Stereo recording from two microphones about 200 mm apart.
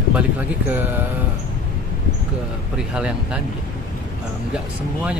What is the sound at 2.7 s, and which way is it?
Speech, 5° right (ahead or behind).